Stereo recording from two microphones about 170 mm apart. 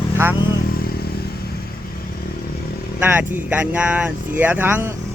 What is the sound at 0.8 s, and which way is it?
Motorcycle, 65° left (ahead or behind).